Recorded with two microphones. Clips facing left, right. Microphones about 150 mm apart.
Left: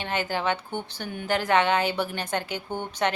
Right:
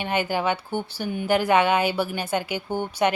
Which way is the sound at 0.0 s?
15° right (ahead or behind).